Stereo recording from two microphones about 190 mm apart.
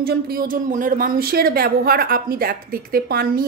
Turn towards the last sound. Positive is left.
turn(degrees=-50)  # may be behind; listen again after turning